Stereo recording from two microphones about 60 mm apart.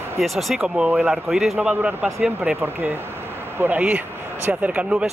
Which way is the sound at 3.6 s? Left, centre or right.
Right.